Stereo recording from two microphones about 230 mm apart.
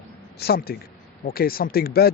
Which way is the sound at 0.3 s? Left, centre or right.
Left.